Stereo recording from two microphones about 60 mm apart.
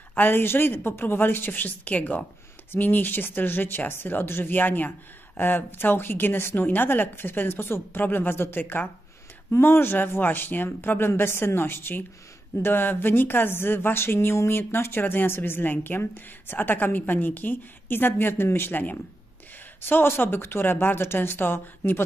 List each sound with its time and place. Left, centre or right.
0.1 s speech: left